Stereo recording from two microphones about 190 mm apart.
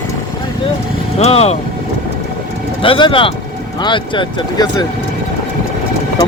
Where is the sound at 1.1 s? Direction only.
35° left (ahead or behind).